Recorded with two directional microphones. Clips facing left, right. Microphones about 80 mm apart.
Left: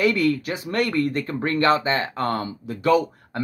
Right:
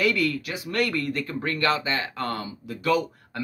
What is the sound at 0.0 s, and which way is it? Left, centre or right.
Speech, left.